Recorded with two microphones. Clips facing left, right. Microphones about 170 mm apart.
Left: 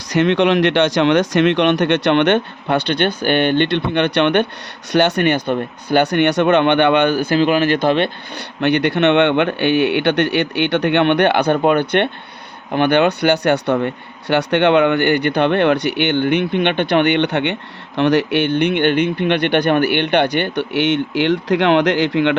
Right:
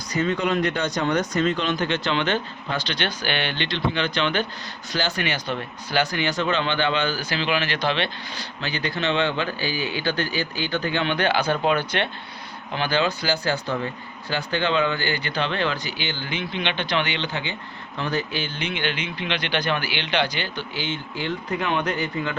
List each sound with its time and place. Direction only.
0.1 s speech: 90° left; by 8.1 s 50° left (ahead or behind)
8.6 s speech: 70° left (ahead or behind)